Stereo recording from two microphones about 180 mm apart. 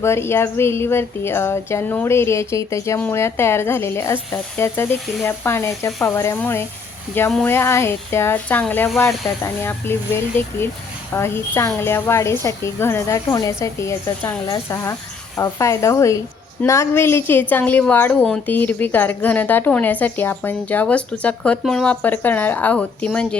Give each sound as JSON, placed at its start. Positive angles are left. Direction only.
{"t": 0.0, "sound": "a woman's voice", "side_deg": 15}